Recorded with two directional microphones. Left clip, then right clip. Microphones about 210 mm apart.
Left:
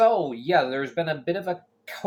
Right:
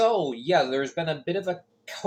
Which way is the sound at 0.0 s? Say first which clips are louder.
Left 3 dB; 15° left (ahead or behind).